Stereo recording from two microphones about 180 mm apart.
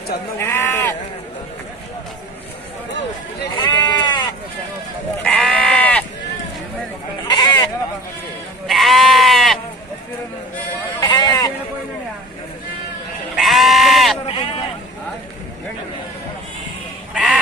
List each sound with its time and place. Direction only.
0.4 s speech: 10° left (ahead or behind)
3.5 s sheep: 25° left (ahead or behind)
5.2 s sheep: 5° left (ahead or behind)
7.2 s sheep: 25° left (ahead or behind)
8.6 s sheep: centre (ahead or behind)
11.0 s sheep: 20° left (ahead or behind)
13.4 s sheep: centre (ahead or behind)
14.1 s sheep: 30° left (ahead or behind)
17.1 s duck: 5° right (ahead or behind)